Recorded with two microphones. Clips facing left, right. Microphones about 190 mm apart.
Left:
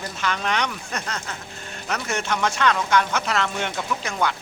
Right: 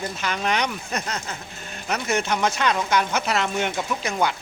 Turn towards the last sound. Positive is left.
turn(degrees=-15)  # may be behind; listen again after turning